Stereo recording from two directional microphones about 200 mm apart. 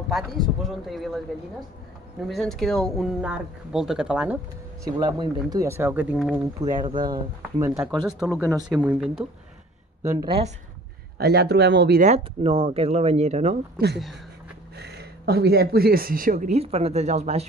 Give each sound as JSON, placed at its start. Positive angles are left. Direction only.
{"t": 0.1, "sound": "speech", "side_deg": 0}
{"t": 2.2, "sound": "speech", "side_deg": 0}
{"t": 4.8, "sound": "speech", "side_deg": -20}
{"t": 6.8, "sound": "speech", "side_deg": -20}
{"t": 8.3, "sound": "speech", "side_deg": 10}
{"t": 8.6, "sound": "speech", "side_deg": -5}
{"t": 11.1, "sound": "speech", "side_deg": -55}
{"t": 12.0, "sound": "speech", "side_deg": -30}
{"t": 14.8, "sound": "speech", "side_deg": -55}